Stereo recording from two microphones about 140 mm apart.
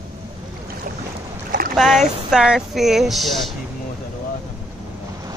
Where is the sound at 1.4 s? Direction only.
90° right.